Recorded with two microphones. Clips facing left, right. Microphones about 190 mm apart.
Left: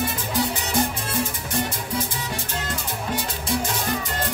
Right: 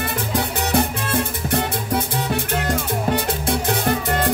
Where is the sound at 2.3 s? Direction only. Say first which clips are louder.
Right 11 dB; 65° right (ahead or behind).